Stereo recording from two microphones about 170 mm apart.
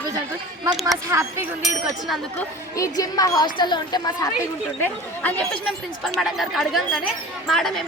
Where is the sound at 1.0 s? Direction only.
15° right (ahead or behind).